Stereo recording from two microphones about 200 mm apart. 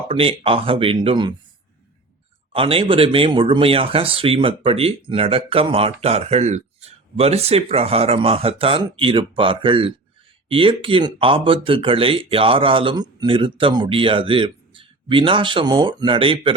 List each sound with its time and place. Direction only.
0.1 s speech: 30° right (ahead or behind)
2.5 s speech: 30° right (ahead or behind)